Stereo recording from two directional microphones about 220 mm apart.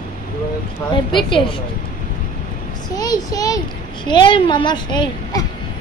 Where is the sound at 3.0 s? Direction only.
15° left (ahead or behind).